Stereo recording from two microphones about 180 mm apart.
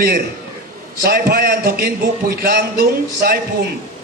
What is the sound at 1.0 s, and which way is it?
A man's voice, 55° right (ahead or behind).